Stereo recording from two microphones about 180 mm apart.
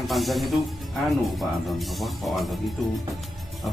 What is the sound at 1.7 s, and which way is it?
Speech, centre (ahead or behind).